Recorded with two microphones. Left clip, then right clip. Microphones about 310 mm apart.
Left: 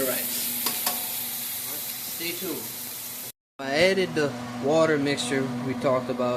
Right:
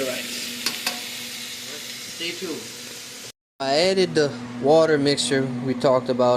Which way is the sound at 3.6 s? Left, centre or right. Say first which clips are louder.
Right 3 dB; centre.